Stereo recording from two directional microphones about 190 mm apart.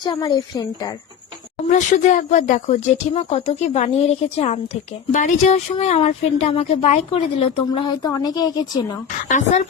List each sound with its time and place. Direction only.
0.0 s a woman's voice: 25° left (ahead or behind)
1.7 s a woman's voice: 40° left (ahead or behind); by 9.0 s 20° left (ahead or behind)
9.3 s speech: 40° left (ahead or behind)